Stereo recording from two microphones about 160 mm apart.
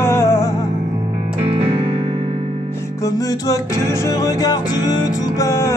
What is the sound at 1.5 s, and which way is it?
Music, 35° right (ahead or behind).